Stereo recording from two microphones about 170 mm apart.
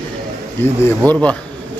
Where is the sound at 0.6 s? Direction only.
10° left (ahead or behind).